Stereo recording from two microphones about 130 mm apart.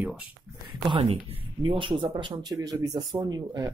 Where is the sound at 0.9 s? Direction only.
50° right (ahead or behind); by 3.7 s 30° right (ahead or behind).